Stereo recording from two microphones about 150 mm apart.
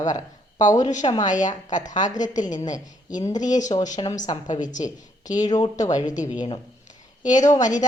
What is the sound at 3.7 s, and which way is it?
Speech, 35° left (ahead or behind).